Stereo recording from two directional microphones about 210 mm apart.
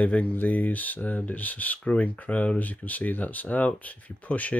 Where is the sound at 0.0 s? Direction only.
5° left (ahead or behind).